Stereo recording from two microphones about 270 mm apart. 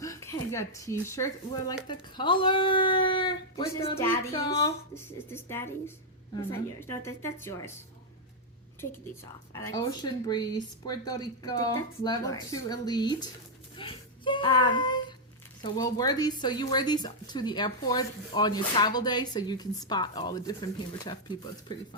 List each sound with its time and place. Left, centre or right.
0.0 s speech: centre
9.5 s a child's voice: centre